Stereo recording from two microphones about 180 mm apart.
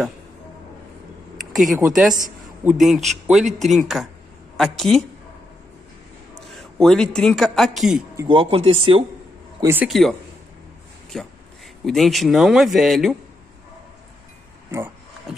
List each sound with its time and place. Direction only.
1.5 s speech: centre (ahead or behind)
6.3 s a sound: centre (ahead or behind)
7.2 s speech: centre (ahead or behind)
8.3 s speech: 30° right (ahead or behind)
9.6 s speech: 15° right (ahead or behind)
9.8 s speech: centre (ahead or behind)
11.1 s speech: 5° left (ahead or behind)
14.7 s speech: 15° right (ahead or behind)
15.3 s speech: centre (ahead or behind)